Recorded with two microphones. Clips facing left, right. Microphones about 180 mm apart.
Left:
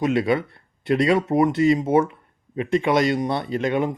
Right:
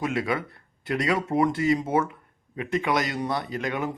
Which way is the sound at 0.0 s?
25° left (ahead or behind).